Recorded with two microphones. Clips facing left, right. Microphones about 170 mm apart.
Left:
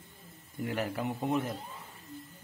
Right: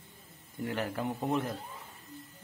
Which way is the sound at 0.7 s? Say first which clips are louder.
Even; 5° left (ahead or behind).